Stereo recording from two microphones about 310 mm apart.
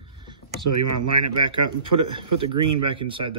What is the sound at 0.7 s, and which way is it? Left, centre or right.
Speech, right.